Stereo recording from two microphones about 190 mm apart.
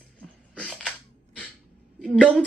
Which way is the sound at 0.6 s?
5° left (ahead or behind).